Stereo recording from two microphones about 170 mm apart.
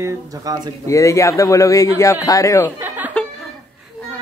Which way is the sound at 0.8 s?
20° left (ahead or behind).